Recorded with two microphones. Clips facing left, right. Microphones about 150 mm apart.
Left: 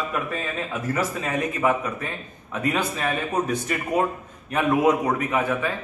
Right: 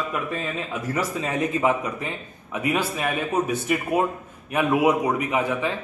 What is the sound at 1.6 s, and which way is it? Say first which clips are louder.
A man's voice: even; 15° right (ahead or behind).